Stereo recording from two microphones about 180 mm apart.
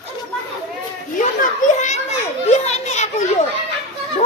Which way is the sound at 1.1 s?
45° left (ahead or behind).